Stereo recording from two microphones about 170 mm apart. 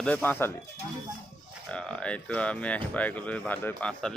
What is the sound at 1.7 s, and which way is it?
Speech, 5° left (ahead or behind).